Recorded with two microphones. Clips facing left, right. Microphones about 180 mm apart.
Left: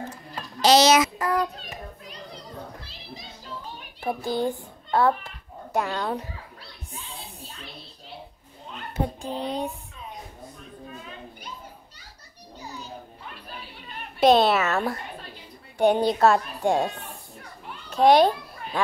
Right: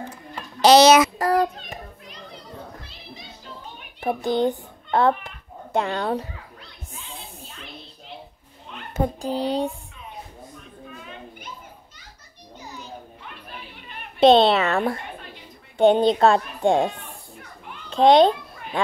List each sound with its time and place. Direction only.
0.6 s speech: 65° right (ahead or behind)
1.1 s child singing: 35° right (ahead or behind)
1.6 s children playing: 35° left (ahead or behind)
4.0 s a child's voice: 20° right (ahead or behind)
8.9 s a child's voice: 35° right (ahead or behind)
14.2 s a child's voice: 25° right (ahead or behind)
17.8 s a sound: 25° right (ahead or behind)